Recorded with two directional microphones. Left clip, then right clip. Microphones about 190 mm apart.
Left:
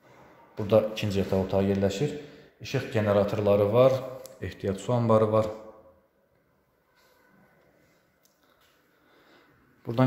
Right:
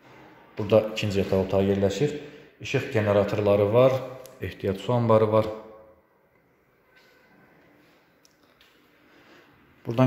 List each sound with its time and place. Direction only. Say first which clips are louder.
0.6 s a man's voice: right 2 dB; centre (ahead or behind)